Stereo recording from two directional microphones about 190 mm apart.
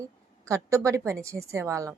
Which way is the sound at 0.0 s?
15° right (ahead or behind).